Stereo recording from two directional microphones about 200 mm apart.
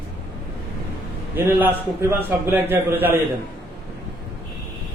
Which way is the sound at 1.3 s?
10° right (ahead or behind).